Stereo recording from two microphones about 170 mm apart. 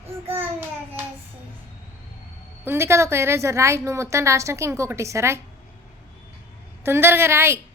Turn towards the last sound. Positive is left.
turn(degrees=-15)  # may be behind; listen again after turning